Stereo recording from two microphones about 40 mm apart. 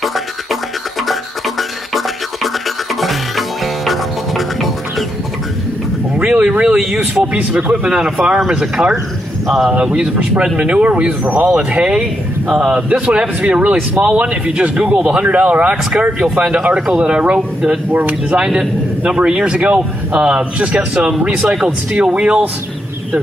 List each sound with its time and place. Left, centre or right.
0.0 s music: centre
1.6 s music: centre
6.1 s vehicle: right
7.2 s speech: right
7.8 s speech: right
12.9 s speech: right
15.2 s speech: right
17.6 s speech: right
19.0 s speech: right
19.6 s speech: right; by 22.1 s centre
22.1 s speech: right